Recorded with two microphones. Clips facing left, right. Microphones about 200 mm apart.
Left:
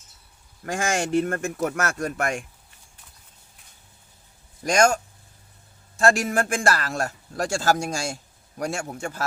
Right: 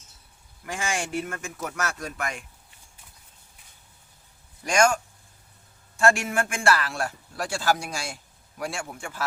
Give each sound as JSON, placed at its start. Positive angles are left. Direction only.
{"t": 0.6, "sound": "a man's voice", "side_deg": 45}
{"t": 4.6, "sound": "speech", "side_deg": 40}
{"t": 6.0, "sound": "a man's voice", "side_deg": 35}